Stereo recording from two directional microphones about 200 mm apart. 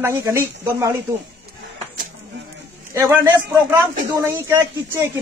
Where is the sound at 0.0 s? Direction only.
15° right (ahead or behind).